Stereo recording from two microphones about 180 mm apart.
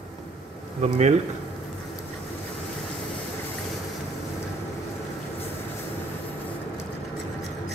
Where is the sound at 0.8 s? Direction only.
40° right (ahead or behind).